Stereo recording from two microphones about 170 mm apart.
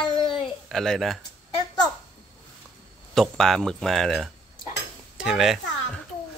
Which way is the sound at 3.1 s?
Centre (ahead or behind).